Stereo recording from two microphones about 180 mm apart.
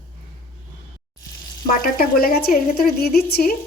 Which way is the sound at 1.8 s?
55° left (ahead or behind).